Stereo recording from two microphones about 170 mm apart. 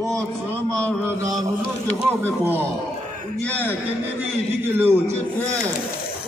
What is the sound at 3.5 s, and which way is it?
Speech, 10° left (ahead or behind).